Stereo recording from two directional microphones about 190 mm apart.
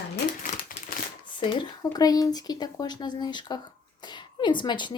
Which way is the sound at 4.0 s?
25° left (ahead or behind).